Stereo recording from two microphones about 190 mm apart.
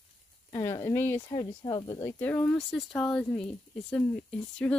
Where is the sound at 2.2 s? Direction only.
10° left (ahead or behind).